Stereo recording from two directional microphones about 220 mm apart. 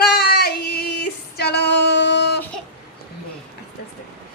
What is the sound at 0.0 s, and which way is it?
Female singing, 45° left (ahead or behind).